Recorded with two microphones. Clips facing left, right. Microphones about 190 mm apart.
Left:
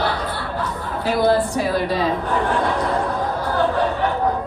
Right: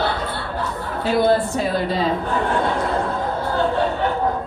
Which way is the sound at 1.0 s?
25° right (ahead or behind).